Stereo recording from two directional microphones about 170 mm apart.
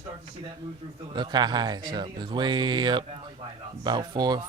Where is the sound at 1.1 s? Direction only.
25° right (ahead or behind).